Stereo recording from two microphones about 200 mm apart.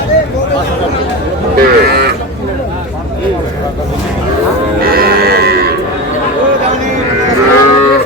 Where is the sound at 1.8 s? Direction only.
50° right (ahead or behind).